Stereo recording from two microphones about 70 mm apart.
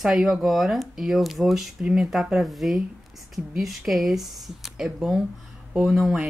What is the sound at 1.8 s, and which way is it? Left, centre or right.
Speech, centre.